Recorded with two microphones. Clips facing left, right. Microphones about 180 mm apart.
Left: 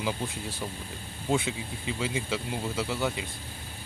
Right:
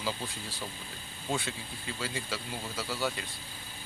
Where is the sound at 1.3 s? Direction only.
15° left (ahead or behind).